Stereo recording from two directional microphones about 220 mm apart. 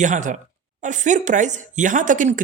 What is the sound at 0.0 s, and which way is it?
Speech, 35° right (ahead or behind).